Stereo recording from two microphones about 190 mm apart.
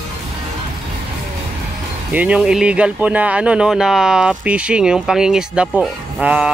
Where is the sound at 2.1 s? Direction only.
5° right (ahead or behind).